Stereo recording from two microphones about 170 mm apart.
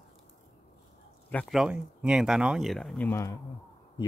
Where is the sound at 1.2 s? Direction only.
5° left (ahead or behind).